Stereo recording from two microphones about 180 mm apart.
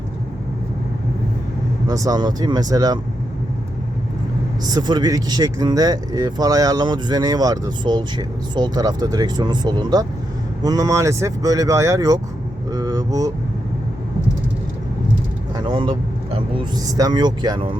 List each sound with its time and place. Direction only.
1.9 s speech: 20° right (ahead or behind)
4.7 s speech: 25° right (ahead or behind)
12.7 s vehicle: 20° right (ahead or behind)
15.5 s speech: 25° right (ahead or behind)